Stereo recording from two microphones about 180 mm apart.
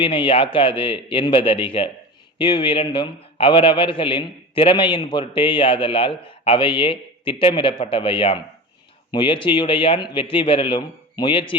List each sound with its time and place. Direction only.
0.0 s a man's voice: 30° left (ahead or behind)